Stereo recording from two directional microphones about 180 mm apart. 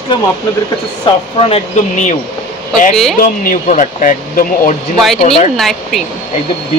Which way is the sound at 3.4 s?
45° left (ahead or behind).